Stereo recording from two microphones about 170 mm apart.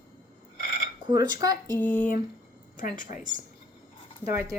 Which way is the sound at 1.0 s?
25° right (ahead or behind).